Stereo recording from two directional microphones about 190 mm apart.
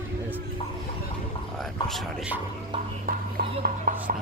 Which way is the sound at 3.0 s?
50° right (ahead or behind).